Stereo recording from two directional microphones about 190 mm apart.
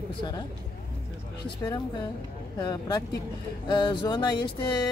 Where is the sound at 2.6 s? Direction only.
20° left (ahead or behind).